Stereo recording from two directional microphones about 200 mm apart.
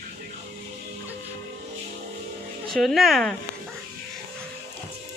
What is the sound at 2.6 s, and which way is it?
Speech, centre (ahead or behind).